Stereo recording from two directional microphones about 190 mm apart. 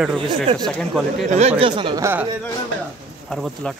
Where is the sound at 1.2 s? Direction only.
35° right (ahead or behind); by 2.3 s 15° right (ahead or behind).